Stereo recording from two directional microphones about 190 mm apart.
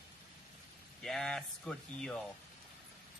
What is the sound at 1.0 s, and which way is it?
Speech, centre (ahead or behind).